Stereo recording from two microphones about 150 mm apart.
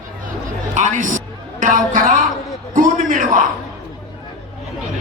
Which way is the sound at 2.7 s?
60° right (ahead or behind).